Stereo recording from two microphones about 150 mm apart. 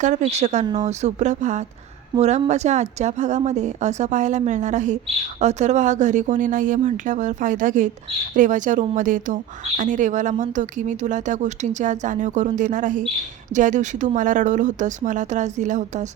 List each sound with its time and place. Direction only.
0.0 s speech: 55° right (ahead or behind)
0.6 s speech: 30° right (ahead or behind)
0.9 s speech: 50° right (ahead or behind)